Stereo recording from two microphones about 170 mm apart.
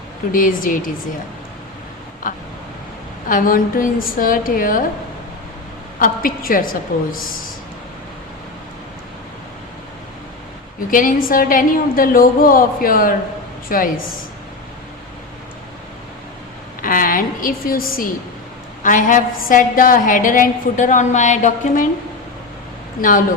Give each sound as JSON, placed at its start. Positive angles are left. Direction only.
{"t": 0.3, "sound": "a woman's voice", "side_deg": 55}
{"t": 2.3, "sound": "a woman's voice", "side_deg": 50}
{"t": 6.0, "sound": "a woman's voice", "side_deg": 55}
{"t": 10.9, "sound": "a woman's voice", "side_deg": 55}
{"t": 16.8, "sound": "a woman's voice", "side_deg": 55}
{"t": 23.0, "sound": "a woman's voice", "side_deg": 55}